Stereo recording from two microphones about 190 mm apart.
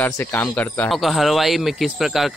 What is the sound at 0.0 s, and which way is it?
A man's voice, 10° left (ahead or behind).